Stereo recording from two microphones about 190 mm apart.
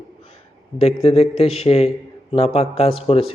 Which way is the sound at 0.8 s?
30° left (ahead or behind).